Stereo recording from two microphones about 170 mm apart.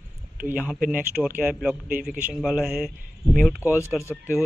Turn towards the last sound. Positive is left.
turn(degrees=15)  # may be behind; listen again after turning